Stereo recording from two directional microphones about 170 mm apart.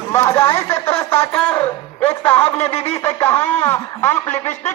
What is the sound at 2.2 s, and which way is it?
Speech, 10° left (ahead or behind).